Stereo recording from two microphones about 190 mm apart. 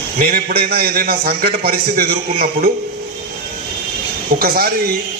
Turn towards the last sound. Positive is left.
turn(degrees=-50)  # may be behind; listen again after turning